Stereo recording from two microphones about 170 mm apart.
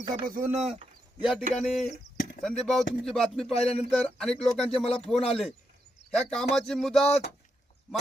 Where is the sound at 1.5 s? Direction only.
Centre (ahead or behind).